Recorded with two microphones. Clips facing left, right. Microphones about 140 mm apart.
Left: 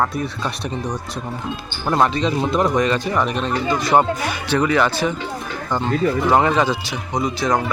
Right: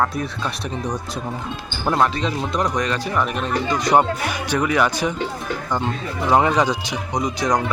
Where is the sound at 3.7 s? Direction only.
15° right (ahead or behind).